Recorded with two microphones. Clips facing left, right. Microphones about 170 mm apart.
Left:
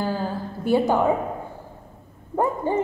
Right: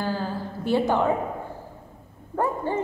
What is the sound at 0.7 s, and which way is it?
Speech, 10° left (ahead or behind).